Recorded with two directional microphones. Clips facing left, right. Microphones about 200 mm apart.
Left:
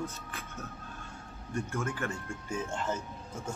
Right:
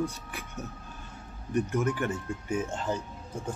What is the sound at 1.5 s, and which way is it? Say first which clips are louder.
Speech: right 7 dB; 15° right (ahead or behind).